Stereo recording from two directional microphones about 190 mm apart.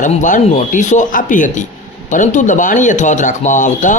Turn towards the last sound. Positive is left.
turn(degrees=40)  # may be behind; listen again after turning